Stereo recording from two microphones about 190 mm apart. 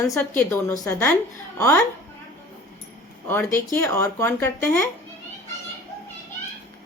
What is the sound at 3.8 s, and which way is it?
Speech, 15° left (ahead or behind).